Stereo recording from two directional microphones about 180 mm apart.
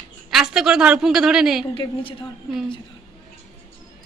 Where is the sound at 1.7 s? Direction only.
30° left (ahead or behind).